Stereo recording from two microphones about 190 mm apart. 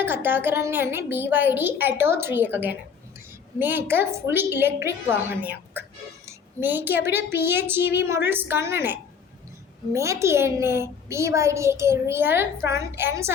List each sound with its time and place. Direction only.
0.0 s a child's voice: 10° right (ahead or behind)